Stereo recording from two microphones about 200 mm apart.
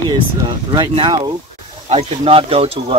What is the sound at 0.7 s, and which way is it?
Speech, 20° right (ahead or behind).